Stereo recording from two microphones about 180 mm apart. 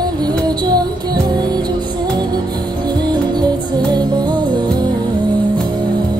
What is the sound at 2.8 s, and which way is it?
Music, 25° right (ahead or behind).